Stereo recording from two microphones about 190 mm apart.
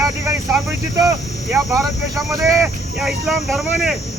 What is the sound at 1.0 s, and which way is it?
Speech, 15° right (ahead or behind).